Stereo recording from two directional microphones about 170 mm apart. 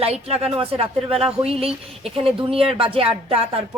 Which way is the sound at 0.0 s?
35° right (ahead or behind).